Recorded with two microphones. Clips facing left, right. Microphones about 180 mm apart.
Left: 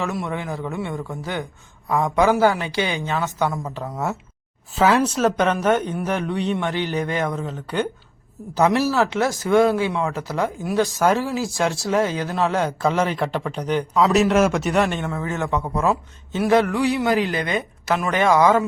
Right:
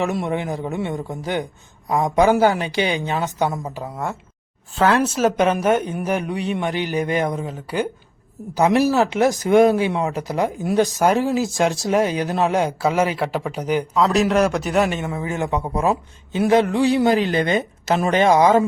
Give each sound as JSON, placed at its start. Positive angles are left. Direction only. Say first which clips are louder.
{"t": 0.0, "sound": "a man's voice", "louder": "right 4 dB", "side_deg": -20}
{"t": 4.7, "sound": "speech", "louder": "even", "side_deg": 5}
{"t": 13.9, "sound": "speech", "louder": "left 1 dB", "side_deg": 5}